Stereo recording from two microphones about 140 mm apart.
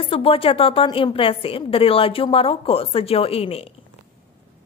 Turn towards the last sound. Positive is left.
turn(degrees=45)  # may be behind; listen again after turning